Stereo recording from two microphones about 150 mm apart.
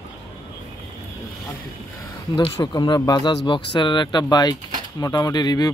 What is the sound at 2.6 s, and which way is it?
Speech, 25° left (ahead or behind).